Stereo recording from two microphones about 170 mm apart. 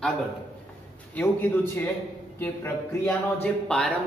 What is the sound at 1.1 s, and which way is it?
Speech, 10° left (ahead or behind).